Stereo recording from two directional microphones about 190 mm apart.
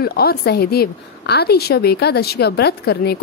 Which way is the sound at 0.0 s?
55° left (ahead or behind).